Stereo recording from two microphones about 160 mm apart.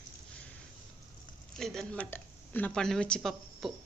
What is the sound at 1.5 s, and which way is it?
A woman's voice, centre (ahead or behind).